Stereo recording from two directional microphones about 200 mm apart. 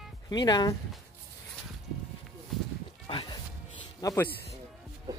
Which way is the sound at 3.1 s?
25° left (ahead or behind).